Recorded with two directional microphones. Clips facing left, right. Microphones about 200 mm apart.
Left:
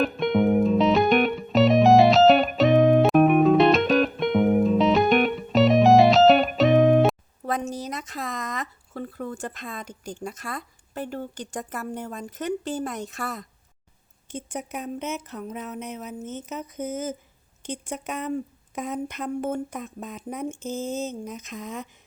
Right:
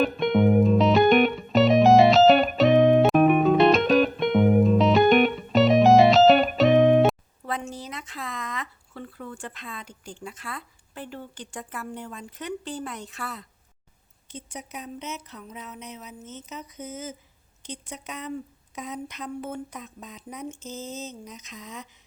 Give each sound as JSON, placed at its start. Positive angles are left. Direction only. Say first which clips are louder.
{"t": 0.0, "sound": "music", "louder": "right 1 dB", "side_deg": 0}
{"t": 7.4, "sound": "speech", "louder": "left 4 dB", "side_deg": 40}